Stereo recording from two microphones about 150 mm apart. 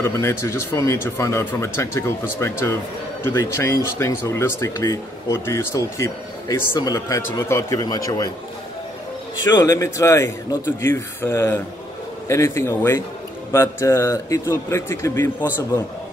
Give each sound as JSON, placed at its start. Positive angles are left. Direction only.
{"t": 0.0, "sound": "speech", "side_deg": 15}
{"t": 9.6, "sound": "speech", "side_deg": 20}